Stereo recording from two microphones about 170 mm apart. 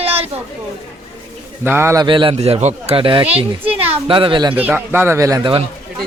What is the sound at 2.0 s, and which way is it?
Speech, 30° right (ahead or behind).